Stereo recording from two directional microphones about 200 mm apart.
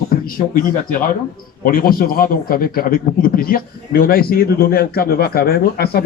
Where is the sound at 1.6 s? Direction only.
45° left (ahead or behind).